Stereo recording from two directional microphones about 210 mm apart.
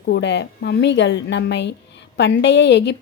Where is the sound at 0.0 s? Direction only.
55° left (ahead or behind).